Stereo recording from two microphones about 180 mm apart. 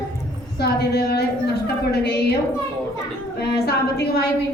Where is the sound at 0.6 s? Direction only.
65° left (ahead or behind).